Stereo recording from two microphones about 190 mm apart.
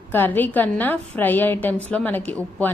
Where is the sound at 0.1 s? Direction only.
10° left (ahead or behind).